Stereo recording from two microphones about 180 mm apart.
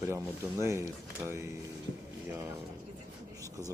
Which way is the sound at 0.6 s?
15° right (ahead or behind).